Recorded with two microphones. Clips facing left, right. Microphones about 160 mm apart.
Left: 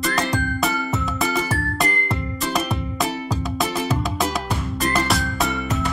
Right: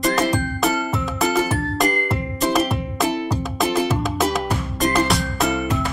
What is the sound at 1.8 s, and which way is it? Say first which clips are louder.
Music: right 4 dB; centre (ahead or behind).